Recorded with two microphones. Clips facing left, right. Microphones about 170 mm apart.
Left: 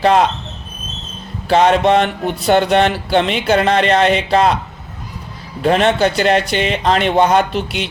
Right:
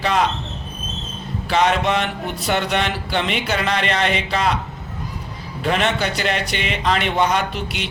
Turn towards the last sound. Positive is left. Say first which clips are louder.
# left 7 dB
turn(degrees=30)  # may be behind; listen again after turning